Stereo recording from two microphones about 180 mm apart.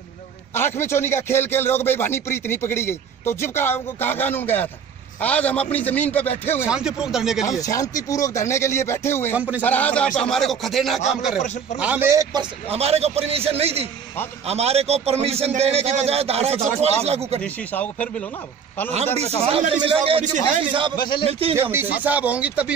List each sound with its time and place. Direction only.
0.6 s speech: 15° left (ahead or behind)
6.7 s speech: 5° right (ahead or behind)
7.4 s speech: 20° left (ahead or behind); by 11.0 s centre (ahead or behind)
11.8 s a man's voice: 10° right (ahead or behind); by 17.4 s 35° right (ahead or behind)
17.4 s speech: 10° left (ahead or behind)
19.1 s a man's voice: 35° right (ahead or behind)
21.5 s speech: 10° right (ahead or behind)